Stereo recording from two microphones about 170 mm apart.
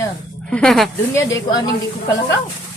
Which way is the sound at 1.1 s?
15° left (ahead or behind).